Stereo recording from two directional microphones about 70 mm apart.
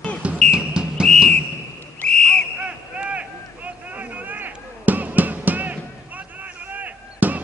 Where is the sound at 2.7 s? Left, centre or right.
Centre.